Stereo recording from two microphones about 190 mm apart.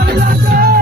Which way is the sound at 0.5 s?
50° right (ahead or behind).